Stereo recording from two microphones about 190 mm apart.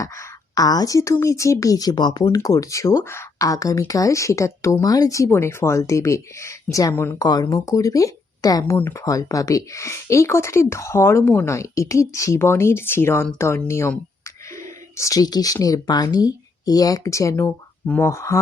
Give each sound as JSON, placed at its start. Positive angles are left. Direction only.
{"t": 0.0, "sound": "speech", "side_deg": 20}